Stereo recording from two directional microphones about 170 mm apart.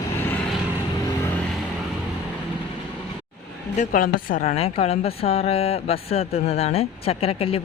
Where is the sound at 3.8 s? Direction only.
55° left (ahead or behind); by 7.6 s 35° left (ahead or behind).